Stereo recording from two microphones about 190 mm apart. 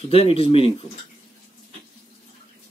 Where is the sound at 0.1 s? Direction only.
30° left (ahead or behind).